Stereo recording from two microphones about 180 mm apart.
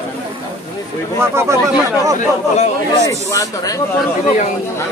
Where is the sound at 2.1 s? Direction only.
40° left (ahead or behind).